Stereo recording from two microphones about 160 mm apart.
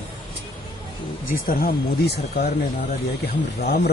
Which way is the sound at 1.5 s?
80° left.